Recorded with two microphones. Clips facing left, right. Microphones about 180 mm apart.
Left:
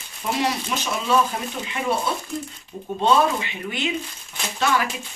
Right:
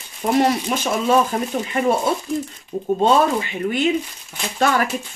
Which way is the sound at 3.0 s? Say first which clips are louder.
Right 2 dB; 45° right (ahead or behind).